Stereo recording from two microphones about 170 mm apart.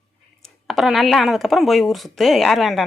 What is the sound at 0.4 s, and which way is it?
Speech, centre (ahead or behind).